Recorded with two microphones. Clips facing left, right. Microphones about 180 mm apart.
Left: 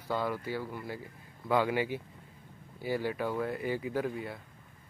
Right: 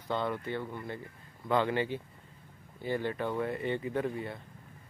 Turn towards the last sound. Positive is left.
turn(degrees=0)  # may be behind; listen again after turning